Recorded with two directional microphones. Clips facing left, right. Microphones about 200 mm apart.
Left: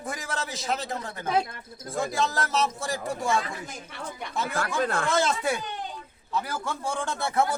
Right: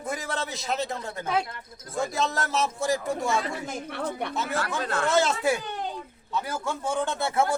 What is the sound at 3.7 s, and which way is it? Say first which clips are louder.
Speech: right 7 dB; 60° right (ahead or behind).